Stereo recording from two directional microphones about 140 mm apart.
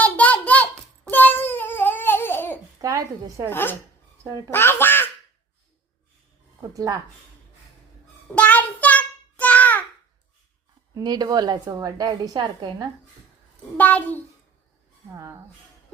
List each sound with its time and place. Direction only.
0.0 s a sound: 10° left (ahead or behind)
1.1 s babbling: 15° left (ahead or behind)
2.8 s a woman's voice: 20° right (ahead or behind)
3.5 s a child's voice: 15° left (ahead or behind)
4.2 s speech: 25° right (ahead or behind)
4.5 s quack: 15° left (ahead or behind)
6.6 s a woman's voice: 25° right (ahead or behind)
8.4 s child singing: 10° left (ahead or behind)
10.9 s a woman's voice: 30° right (ahead or behind)
13.7 s a child's voice: 10° left (ahead or behind)
15.1 s a woman's voice: 20° right (ahead or behind)